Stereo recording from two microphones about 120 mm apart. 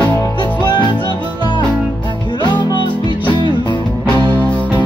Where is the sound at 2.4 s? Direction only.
35° left (ahead or behind).